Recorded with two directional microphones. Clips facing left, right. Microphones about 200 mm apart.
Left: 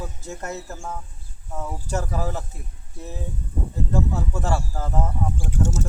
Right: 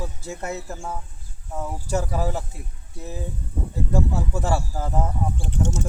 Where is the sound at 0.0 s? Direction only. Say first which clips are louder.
Right 2 dB; 10° right (ahead or behind).